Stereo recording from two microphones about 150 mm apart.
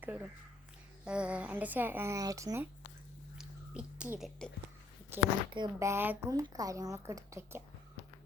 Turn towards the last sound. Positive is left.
turn(degrees=-20)  # may be behind; listen again after turning